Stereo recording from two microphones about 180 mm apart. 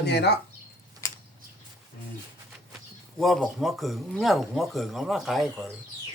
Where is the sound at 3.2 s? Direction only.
Centre (ahead or behind).